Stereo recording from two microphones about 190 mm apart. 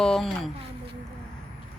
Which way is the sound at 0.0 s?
Centre (ahead or behind).